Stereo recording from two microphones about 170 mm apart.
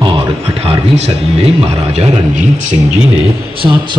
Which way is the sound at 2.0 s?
45° right (ahead or behind).